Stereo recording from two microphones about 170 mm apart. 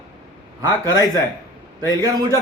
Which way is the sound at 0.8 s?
20° left (ahead or behind).